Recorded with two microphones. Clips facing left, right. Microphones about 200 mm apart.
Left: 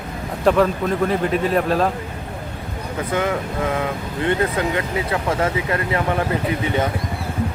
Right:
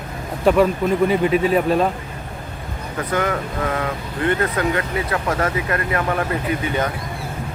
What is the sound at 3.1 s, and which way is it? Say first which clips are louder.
Speech: even; 20° left (ahead or behind).